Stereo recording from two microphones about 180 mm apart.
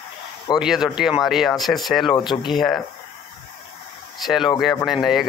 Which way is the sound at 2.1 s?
25° left (ahead or behind).